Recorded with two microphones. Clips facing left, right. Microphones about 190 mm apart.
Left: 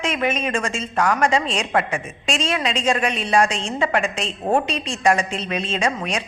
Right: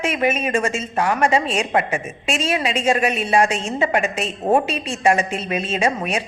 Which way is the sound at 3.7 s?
25° right (ahead or behind).